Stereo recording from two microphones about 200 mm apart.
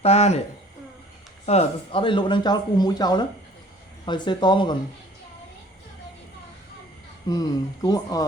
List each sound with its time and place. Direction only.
0.0 s speech: 30° left (ahead or behind)
1.5 s speech: 30° left (ahead or behind)
7.3 s speech: 20° left (ahead or behind)